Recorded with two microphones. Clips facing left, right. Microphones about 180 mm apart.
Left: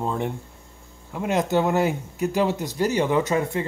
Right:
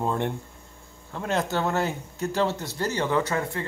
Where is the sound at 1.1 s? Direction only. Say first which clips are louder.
Left 5 dB; 15° left (ahead or behind).